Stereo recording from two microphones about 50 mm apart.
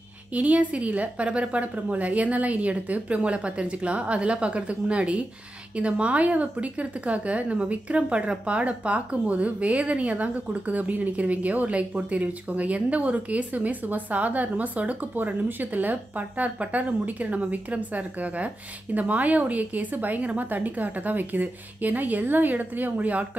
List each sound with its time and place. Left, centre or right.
0.3 s a woman's voice: right